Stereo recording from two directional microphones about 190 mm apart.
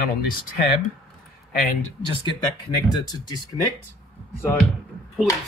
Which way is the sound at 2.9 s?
20° left (ahead or behind).